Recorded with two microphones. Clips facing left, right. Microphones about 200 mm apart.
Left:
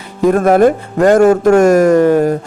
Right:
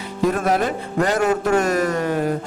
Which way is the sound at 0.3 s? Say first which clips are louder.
Left 11 dB; 50° left (ahead or behind).